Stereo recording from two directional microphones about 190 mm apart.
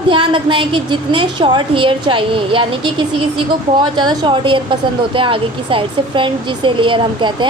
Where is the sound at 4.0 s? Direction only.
25° right (ahead or behind).